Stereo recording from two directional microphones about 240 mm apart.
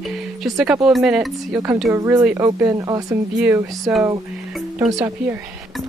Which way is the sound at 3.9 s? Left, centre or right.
Centre.